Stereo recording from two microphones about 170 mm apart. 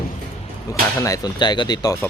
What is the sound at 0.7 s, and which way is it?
Speech, 20° left (ahead or behind).